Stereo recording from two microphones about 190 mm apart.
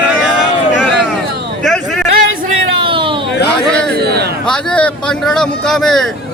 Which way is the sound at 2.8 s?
25° right (ahead or behind).